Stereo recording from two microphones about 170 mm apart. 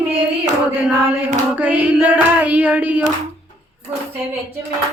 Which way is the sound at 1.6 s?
10° right (ahead or behind).